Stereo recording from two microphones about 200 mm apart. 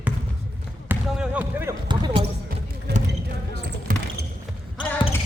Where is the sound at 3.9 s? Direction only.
40° right (ahead or behind).